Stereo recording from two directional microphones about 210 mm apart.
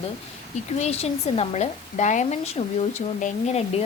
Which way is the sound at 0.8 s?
30° left (ahead or behind).